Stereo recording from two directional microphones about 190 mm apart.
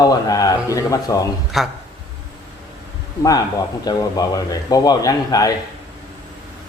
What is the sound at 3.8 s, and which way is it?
A man's voice, 20° left (ahead or behind).